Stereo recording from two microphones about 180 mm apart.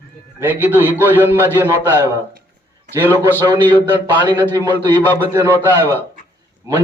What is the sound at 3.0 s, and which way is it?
Speech, 15° right (ahead or behind).